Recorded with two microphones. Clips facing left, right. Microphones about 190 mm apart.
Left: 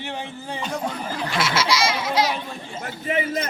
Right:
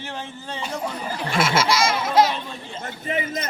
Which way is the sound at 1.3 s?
50° right (ahead or behind).